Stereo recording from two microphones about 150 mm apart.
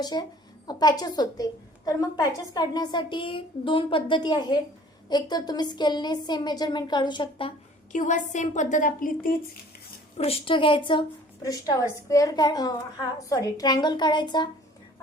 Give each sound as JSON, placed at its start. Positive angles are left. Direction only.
{"t": 0.0, "sound": "a woman's voice", "side_deg": 25}
{"t": 7.9, "sound": "a woman's voice", "side_deg": 55}
{"t": 10.2, "sound": "a woman's voice", "side_deg": 40}